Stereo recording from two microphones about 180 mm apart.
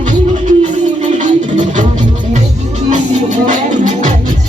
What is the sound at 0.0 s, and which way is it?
Music, 40° right (ahead or behind).